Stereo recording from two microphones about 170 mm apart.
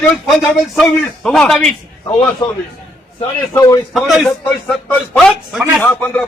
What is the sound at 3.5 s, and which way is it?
Speech, 20° left (ahead or behind).